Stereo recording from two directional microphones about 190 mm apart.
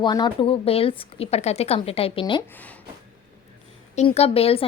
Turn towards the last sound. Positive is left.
turn(degrees=30)  # may be behind; listen again after turning